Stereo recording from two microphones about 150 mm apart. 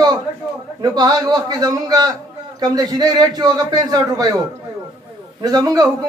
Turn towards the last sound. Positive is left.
turn(degrees=-25)  # may be behind; listen again after turning